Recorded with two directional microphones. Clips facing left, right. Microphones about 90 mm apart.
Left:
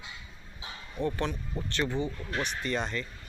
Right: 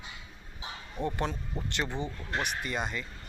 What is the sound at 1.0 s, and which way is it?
A man's voice, 20° right (ahead or behind).